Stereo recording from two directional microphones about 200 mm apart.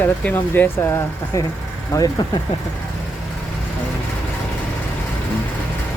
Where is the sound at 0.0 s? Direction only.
10° left (ahead or behind).